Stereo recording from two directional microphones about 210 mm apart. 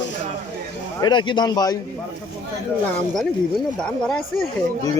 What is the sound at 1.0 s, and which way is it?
Speech, 20° left (ahead or behind).